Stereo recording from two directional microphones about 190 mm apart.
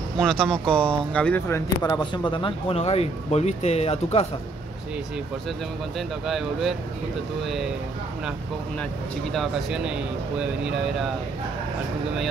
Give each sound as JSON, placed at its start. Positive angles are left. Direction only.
{"t": 0.2, "sound": "speech", "side_deg": 5}
{"t": 1.8, "sound": "speech", "side_deg": 20}
{"t": 5.9, "sound": "speech", "side_deg": 0}
{"t": 9.3, "sound": "speech", "side_deg": 0}